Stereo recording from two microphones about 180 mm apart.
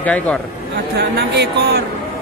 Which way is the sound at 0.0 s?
10° left (ahead or behind).